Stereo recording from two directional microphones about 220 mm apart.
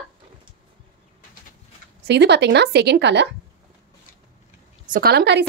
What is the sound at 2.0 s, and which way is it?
A woman's voice, 50° right (ahead or behind).